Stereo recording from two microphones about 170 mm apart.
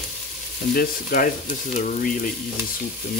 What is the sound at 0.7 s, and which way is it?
Speech, 55° left (ahead or behind).